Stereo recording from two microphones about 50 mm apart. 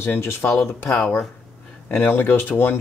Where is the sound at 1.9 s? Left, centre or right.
Left.